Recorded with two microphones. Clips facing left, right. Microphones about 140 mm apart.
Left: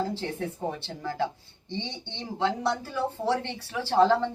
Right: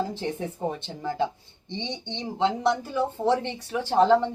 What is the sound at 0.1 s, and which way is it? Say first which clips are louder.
Speech: right 1 dB; 20° right (ahead or behind).